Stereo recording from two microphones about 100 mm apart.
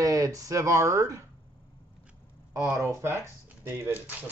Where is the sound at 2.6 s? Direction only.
25° right (ahead or behind).